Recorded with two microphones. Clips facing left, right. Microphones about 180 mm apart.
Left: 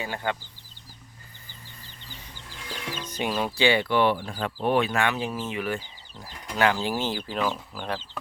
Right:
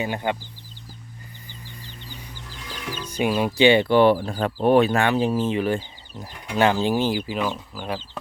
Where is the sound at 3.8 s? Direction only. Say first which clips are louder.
Right 6 dB; 35° right (ahead or behind); by 8.0 s 5° right (ahead or behind).